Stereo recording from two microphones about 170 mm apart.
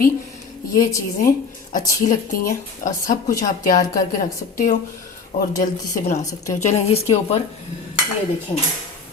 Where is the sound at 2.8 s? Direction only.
55° left (ahead or behind).